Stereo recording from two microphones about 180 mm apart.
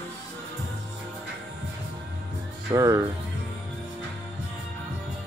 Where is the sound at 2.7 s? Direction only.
20° right (ahead or behind).